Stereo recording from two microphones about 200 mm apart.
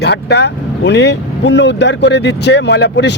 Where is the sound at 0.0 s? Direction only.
55° left (ahead or behind).